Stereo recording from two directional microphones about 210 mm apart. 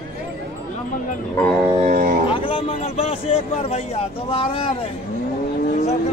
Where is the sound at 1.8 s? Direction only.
40° right (ahead or behind).